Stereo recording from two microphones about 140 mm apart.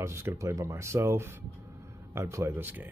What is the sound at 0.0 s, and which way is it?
Speech, 20° right (ahead or behind).